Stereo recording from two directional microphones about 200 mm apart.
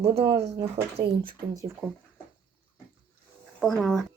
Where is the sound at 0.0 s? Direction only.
30° right (ahead or behind).